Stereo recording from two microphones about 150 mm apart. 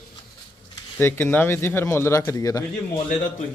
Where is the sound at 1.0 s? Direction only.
15° left (ahead or behind).